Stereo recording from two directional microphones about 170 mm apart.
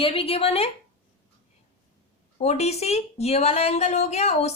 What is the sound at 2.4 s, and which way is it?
A woman's voice, 40° left (ahead or behind).